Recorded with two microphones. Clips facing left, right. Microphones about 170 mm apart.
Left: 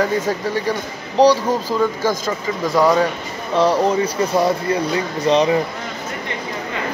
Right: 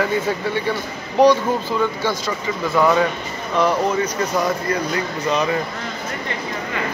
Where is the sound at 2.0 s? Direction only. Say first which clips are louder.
Left 2 dB; 40° left (ahead or behind).